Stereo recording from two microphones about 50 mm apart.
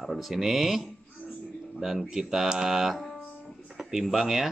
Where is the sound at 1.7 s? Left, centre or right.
Centre.